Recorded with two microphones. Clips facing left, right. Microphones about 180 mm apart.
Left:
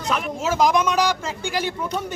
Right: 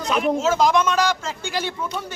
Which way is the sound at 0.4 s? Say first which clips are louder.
Left 3 dB; 10° left (ahead or behind).